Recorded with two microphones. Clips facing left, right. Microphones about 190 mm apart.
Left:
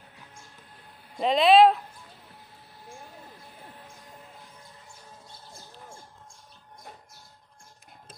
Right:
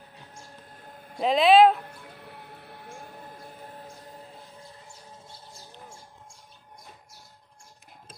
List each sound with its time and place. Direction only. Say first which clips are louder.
1.1 s speech: even; centre (ahead or behind)
1.8 s music: right 4 dB; 65° right (ahead or behind)